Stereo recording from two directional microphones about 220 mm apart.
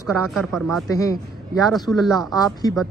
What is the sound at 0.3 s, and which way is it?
A man's voice, centre (ahead or behind).